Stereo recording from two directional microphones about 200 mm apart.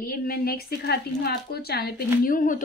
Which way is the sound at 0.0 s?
45° left (ahead or behind).